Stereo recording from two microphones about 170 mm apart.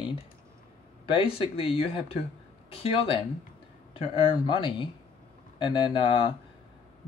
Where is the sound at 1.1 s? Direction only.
30° left (ahead or behind).